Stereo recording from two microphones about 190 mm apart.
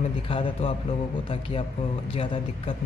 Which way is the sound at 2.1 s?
30° left (ahead or behind).